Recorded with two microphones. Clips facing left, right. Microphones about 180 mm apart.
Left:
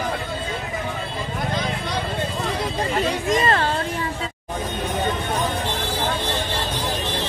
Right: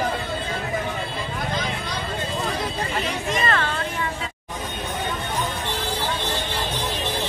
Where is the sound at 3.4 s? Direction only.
35° left (ahead or behind).